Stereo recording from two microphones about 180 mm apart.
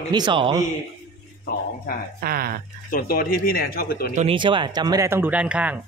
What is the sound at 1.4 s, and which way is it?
Speech, 55° left (ahead or behind).